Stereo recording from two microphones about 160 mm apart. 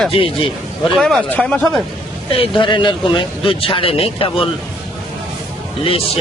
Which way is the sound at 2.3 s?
30° left (ahead or behind).